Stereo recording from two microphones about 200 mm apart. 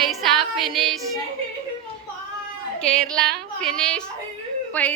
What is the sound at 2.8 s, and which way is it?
A woman's voice, 5° left (ahead or behind).